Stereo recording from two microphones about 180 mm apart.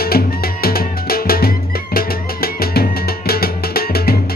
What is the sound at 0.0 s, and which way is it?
Music, 55° left (ahead or behind).